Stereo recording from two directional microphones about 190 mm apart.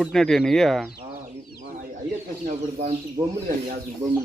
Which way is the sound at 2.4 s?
40° right (ahead or behind).